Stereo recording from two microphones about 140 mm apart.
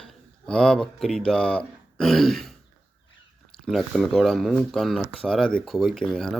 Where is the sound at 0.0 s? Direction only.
5° left (ahead or behind).